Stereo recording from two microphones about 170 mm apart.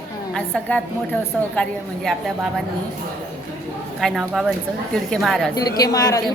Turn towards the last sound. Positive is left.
turn(degrees=20)  # may be behind; listen again after turning